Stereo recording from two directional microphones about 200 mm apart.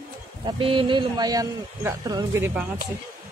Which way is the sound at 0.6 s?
25° right (ahead or behind).